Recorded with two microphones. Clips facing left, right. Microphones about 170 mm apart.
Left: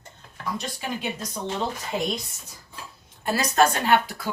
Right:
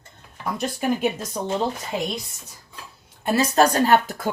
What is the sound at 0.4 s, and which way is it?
Speech, 50° right (ahead or behind).